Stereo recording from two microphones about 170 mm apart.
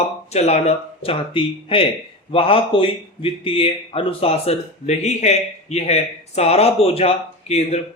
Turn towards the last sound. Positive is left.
turn(degrees=40)  # may be behind; listen again after turning